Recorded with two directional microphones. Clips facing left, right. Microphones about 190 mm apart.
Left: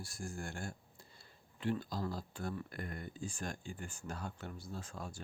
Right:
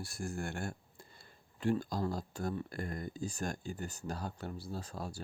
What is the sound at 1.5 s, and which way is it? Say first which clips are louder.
Speech: right 4 dB; 45° right (ahead or behind).